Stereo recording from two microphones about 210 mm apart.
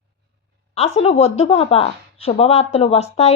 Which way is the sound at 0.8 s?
30° left (ahead or behind).